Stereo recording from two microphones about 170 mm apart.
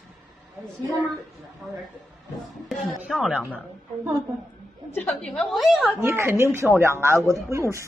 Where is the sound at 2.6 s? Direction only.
Centre (ahead or behind).